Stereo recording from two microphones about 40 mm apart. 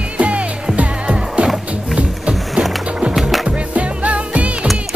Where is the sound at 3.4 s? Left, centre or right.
Right.